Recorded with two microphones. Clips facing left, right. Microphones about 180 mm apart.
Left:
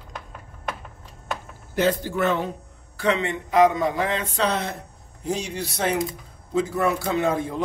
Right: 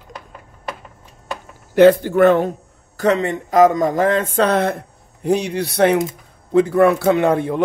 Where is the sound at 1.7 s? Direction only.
65° right (ahead or behind).